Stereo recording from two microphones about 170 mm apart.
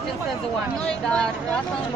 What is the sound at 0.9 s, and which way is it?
Speech, 5° left (ahead or behind).